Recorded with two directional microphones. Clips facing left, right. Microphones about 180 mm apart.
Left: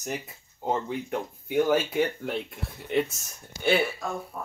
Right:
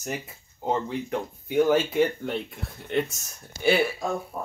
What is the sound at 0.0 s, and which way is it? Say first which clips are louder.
Speech: right 1 dB; centre (ahead or behind).